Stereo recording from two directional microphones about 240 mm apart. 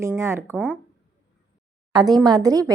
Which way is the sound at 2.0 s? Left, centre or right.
Centre.